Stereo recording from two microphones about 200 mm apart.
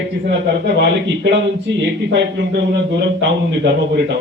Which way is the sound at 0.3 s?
60° right (ahead or behind).